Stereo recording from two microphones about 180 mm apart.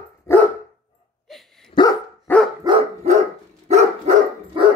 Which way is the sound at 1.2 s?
Centre (ahead or behind).